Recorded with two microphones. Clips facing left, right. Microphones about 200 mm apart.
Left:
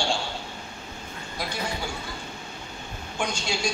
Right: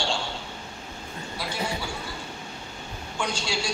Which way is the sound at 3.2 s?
20° left (ahead or behind).